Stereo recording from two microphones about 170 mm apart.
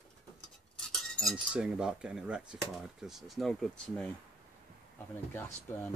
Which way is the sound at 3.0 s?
Centre (ahead or behind).